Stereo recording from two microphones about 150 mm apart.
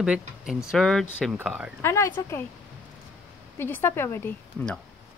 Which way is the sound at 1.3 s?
10° right (ahead or behind).